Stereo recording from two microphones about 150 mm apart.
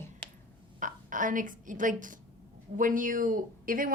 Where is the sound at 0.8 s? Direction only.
60° right (ahead or behind).